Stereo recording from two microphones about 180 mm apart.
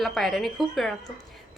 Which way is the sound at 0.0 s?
Centre (ahead or behind).